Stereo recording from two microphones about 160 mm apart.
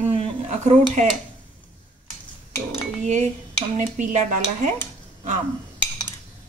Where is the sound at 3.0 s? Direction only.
45° right (ahead or behind).